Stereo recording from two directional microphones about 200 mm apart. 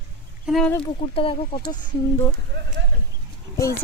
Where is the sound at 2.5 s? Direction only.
60° right (ahead or behind).